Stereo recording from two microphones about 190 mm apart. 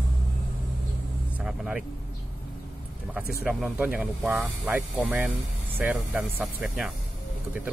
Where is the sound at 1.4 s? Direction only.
5° right (ahead or behind).